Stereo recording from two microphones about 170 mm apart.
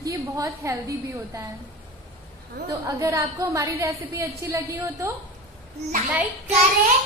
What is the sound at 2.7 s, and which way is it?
A woman's voice, 20° right (ahead or behind).